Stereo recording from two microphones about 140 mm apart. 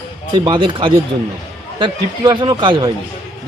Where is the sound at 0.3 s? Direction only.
35° right (ahead or behind).